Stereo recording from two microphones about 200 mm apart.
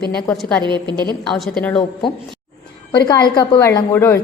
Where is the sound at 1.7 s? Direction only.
25° left (ahead or behind).